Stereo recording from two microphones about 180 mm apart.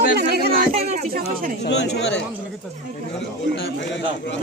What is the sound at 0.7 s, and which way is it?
Speech, 35° right (ahead or behind).